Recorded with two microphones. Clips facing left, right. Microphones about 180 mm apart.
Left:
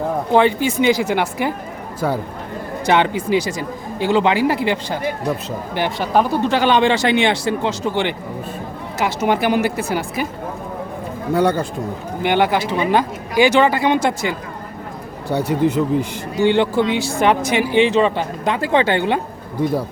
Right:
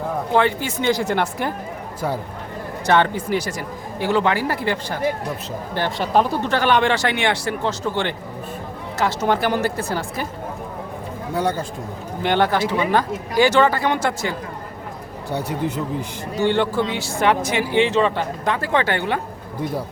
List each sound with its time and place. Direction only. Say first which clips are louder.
0.3 s speech: left 5 dB; 15° left (ahead or behind)
2.8 s speech: left 1 dB; 15° left (ahead or behind)
11.3 s speech: left 5 dB; 65° left (ahead or behind)
12.2 s speech: left 2 dB; 10° left (ahead or behind)
15.3 s speech: left 7 dB; 85° left
16.4 s speech: left 4 dB; 15° left (ahead or behind)